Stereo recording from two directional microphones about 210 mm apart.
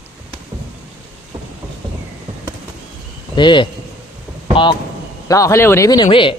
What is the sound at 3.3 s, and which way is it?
A man's voice, 20° left (ahead or behind).